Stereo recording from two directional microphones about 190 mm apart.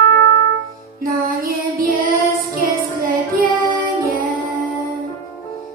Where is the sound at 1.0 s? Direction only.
50° right (ahead or behind).